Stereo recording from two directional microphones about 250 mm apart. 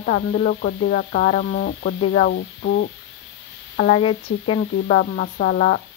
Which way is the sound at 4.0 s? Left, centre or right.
Left.